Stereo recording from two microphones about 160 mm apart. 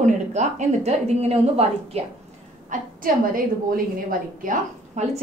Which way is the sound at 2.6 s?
60° right (ahead or behind).